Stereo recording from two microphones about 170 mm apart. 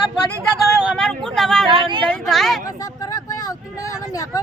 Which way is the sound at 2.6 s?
20° left (ahead or behind).